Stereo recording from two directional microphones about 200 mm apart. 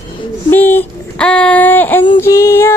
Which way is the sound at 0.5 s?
10° left (ahead or behind).